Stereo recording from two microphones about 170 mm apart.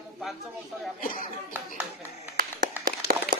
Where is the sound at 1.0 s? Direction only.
55° left (ahead or behind).